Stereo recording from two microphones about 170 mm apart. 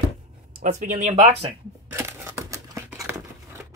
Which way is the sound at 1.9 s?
15° right (ahead or behind).